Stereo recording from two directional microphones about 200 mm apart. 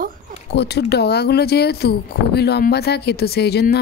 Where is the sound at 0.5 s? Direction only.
55° left (ahead or behind).